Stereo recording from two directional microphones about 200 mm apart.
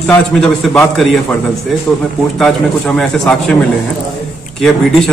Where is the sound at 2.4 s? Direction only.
Centre (ahead or behind).